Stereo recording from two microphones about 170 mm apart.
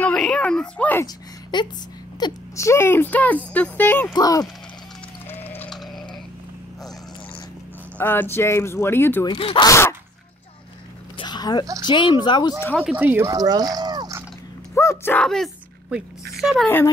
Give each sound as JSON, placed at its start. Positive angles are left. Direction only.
{"t": 0.0, "sound": "speech", "side_deg": 5}
{"t": 1.0, "sound": "a sound", "side_deg": 25}
{"t": 2.1, "sound": "speech", "side_deg": 20}
{"t": 4.1, "sound": "speech", "side_deg": 20}
{"t": 5.3, "sound": "a sound", "side_deg": 10}
{"t": 8.0, "sound": "speech", "side_deg": 10}
{"t": 9.3, "sound": "speech", "side_deg": 30}
{"t": 9.7, "sound": "speech", "side_deg": 15}
{"t": 11.1, "sound": "a sound", "side_deg": 25}
{"t": 11.6, "sound": "a woman's voice", "side_deg": -20}
{"t": 11.9, "sound": "speech", "side_deg": 30}
{"t": 12.7, "sound": "speech", "side_deg": -5}
{"t": 13.3, "sound": "a sound", "side_deg": -20}
{"t": 14.8, "sound": "speech", "side_deg": 15}